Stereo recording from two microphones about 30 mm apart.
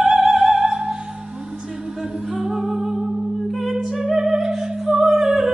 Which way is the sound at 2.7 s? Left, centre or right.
Centre.